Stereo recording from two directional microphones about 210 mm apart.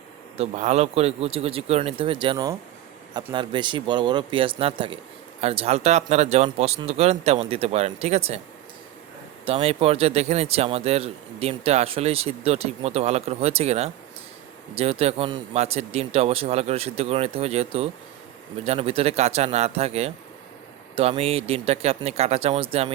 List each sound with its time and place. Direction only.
0.3 s a man's voice: 35° right (ahead or behind)
9.5 s a man's voice: 25° right (ahead or behind)